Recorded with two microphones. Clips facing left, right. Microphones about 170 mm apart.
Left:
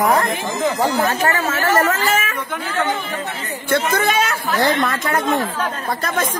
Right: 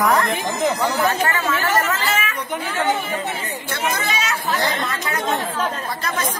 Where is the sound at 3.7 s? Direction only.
55° left (ahead or behind).